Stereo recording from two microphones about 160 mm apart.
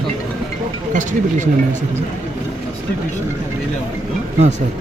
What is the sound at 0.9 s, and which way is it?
Speech, 50° right (ahead or behind).